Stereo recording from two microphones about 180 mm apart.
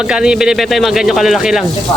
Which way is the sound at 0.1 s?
5° right (ahead or behind).